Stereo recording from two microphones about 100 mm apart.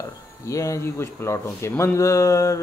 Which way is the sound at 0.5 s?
30° left (ahead or behind).